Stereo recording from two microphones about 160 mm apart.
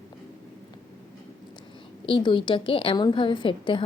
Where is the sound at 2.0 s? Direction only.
30° left (ahead or behind).